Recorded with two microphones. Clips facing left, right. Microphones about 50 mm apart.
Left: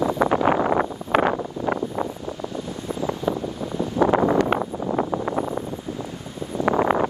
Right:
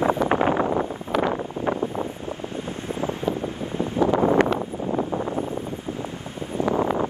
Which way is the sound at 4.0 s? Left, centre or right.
Left.